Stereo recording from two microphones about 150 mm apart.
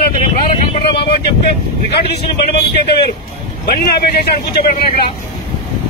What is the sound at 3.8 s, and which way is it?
Speech, 90° left.